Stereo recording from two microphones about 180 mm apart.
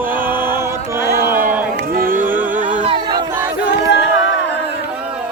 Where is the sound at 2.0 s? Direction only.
50° right (ahead or behind).